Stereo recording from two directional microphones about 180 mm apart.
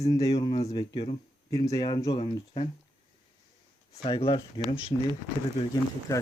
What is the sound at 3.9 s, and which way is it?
Speech, 25° left (ahead or behind).